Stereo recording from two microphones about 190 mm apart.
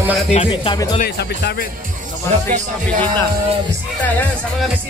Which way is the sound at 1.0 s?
55° left (ahead or behind).